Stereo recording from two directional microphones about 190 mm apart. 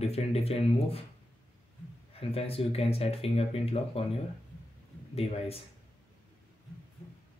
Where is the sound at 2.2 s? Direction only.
30° left (ahead or behind).